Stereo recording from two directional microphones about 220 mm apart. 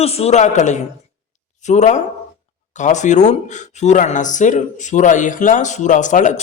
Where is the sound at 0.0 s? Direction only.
30° left (ahead or behind).